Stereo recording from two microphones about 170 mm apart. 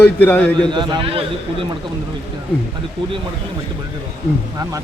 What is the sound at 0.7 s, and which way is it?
Speech, 25° right (ahead or behind).